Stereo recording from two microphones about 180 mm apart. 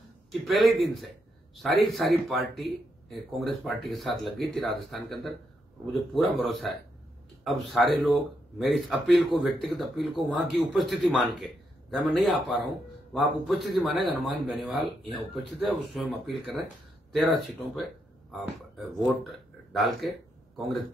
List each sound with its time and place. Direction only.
0.3 s a man's voice: centre (ahead or behind)